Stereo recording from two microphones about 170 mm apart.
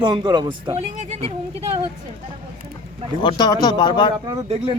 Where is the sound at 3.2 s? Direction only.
25° left (ahead or behind).